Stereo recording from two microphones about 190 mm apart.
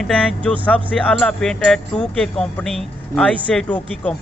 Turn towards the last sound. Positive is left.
turn(degrees=5)  # may be behind; listen again after turning